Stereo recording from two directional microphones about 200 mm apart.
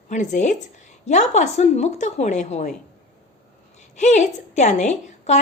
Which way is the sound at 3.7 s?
35° left (ahead or behind).